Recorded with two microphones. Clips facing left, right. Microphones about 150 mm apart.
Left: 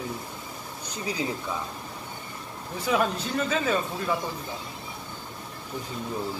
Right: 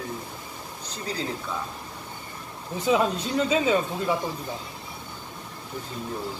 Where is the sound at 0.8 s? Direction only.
10° left (ahead or behind).